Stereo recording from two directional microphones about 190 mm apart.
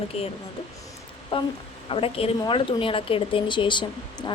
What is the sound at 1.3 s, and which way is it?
A woman's voice, 30° left (ahead or behind).